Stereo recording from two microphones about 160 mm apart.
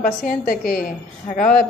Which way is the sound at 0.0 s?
60° left (ahead or behind).